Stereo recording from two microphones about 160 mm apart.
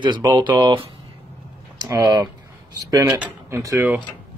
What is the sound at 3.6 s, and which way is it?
Speech, 20° right (ahead or behind).